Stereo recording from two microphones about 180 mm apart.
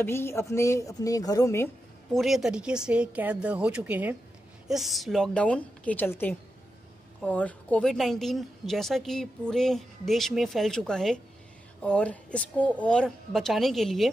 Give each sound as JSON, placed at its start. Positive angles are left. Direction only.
{"t": 0.0, "sound": "a woman's voice", "side_deg": 15}
{"t": 2.1, "sound": "a woman's voice", "side_deg": 0}